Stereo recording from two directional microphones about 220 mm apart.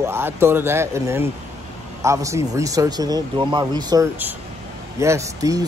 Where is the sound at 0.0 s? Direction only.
10° right (ahead or behind).